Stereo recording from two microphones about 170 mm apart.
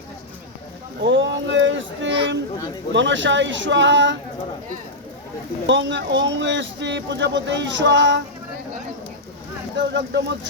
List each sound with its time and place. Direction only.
1.0 s a sound: 90° right
2.9 s speech: 90° right
5.6 s speech: 90° right
9.7 s speech: 85° right